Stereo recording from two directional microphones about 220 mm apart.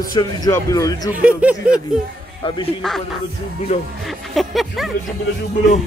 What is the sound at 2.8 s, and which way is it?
Speech, centre (ahead or behind).